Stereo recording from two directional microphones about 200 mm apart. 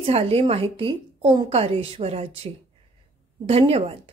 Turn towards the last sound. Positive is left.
turn(degrees=-30)  # may be behind; listen again after turning